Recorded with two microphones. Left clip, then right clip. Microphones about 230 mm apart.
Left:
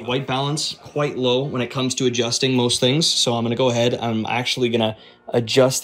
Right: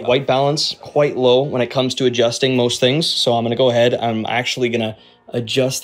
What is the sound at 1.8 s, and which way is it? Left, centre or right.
Speech, centre.